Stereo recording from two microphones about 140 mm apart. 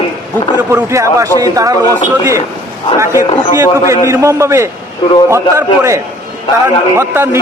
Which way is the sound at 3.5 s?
20° right (ahead or behind).